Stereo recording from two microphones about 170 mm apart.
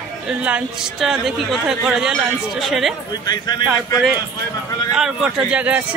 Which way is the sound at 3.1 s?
25° left (ahead or behind).